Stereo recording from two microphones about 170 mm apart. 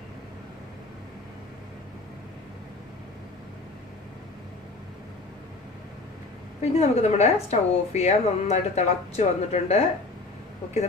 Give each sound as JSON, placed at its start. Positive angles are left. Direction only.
{"t": 6.6, "sound": "a woman's voice", "side_deg": 40}